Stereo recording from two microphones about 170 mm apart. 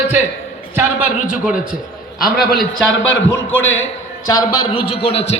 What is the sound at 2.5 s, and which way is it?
Speech, 75° left (ahead or behind).